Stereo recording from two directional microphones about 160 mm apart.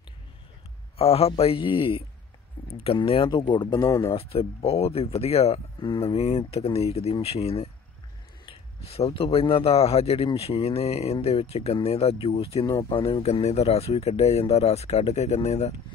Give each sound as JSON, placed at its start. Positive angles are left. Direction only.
{"t": 0.9, "sound": "a man's voice", "side_deg": 40}
{"t": 4.1, "sound": "a man's voice", "side_deg": 40}